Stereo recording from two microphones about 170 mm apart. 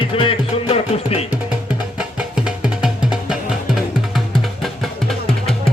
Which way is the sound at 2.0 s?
5° right (ahead or behind).